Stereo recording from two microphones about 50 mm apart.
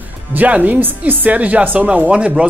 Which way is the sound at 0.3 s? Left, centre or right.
Right.